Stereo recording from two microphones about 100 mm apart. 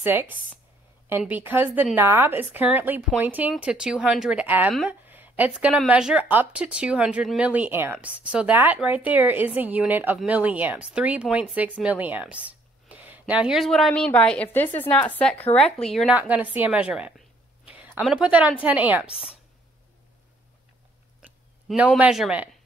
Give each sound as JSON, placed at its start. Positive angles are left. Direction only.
{"t": 0.0, "sound": "a woman's voice", "side_deg": -20}
{"t": 4.8, "sound": "a sound", "side_deg": -20}
{"t": 5.9, "sound": "a woman's voice", "side_deg": -10}
{"t": 16.1, "sound": "speech", "side_deg": -15}
{"t": 17.6, "sound": "a sound", "side_deg": -15}
{"t": 18.0, "sound": "speech", "side_deg": -10}
{"t": 19.0, "sound": "a woman's voice", "side_deg": 75}
{"t": 21.7, "sound": "speech", "side_deg": -10}